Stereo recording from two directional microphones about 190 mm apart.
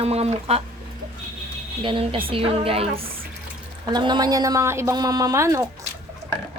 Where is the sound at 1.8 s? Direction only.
25° right (ahead or behind).